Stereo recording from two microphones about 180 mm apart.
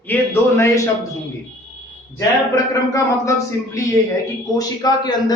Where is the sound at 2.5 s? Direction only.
20° left (ahead or behind).